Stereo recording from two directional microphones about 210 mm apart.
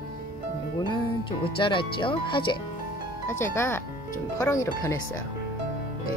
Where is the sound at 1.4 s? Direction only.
25° left (ahead or behind).